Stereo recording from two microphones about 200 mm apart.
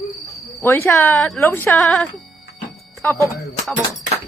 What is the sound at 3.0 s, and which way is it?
Cricket, 10° left (ahead or behind).